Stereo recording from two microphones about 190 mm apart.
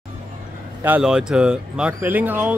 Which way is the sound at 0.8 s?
5° right (ahead or behind).